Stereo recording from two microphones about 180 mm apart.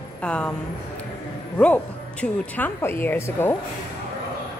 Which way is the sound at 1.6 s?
5° left (ahead or behind).